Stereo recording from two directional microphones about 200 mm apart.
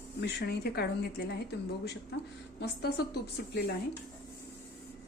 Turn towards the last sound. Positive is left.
turn(degrees=55)  # may be behind; listen again after turning